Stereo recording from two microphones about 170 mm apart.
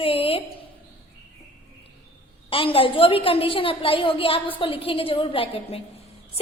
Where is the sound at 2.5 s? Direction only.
30° left (ahead or behind).